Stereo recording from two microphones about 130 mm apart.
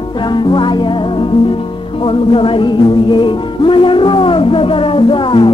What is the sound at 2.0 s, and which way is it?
Music, 45° left (ahead or behind).